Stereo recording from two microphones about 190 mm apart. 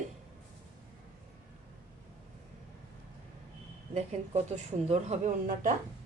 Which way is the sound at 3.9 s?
35° right (ahead or behind).